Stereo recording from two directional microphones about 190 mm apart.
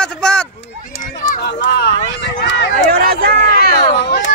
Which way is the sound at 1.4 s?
65° left (ahead or behind).